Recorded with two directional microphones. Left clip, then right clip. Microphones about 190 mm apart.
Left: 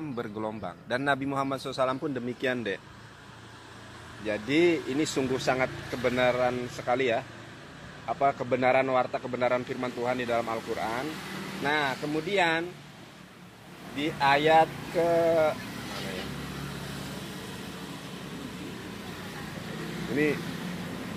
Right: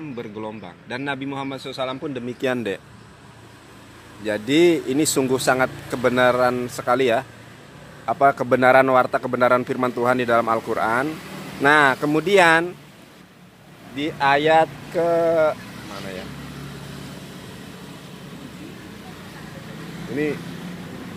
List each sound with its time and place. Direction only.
0.1 s a man's voice: 10° left (ahead or behind)
2.4 s speech: 30° right (ahead or behind)
4.3 s a man's voice: 35° right (ahead or behind)
13.9 s a man's voice: 45° right (ahead or behind)